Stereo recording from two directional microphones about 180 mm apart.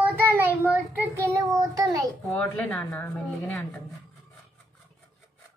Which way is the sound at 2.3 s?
5° left (ahead or behind).